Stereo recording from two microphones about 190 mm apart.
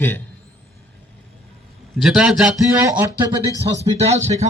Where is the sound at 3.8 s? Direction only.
35° right (ahead or behind).